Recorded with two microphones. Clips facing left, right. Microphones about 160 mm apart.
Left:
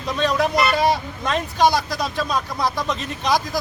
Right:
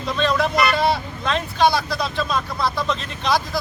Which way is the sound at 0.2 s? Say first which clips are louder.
Even; 15° left (ahead or behind).